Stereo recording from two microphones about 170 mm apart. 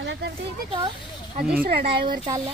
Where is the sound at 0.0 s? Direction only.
90° right.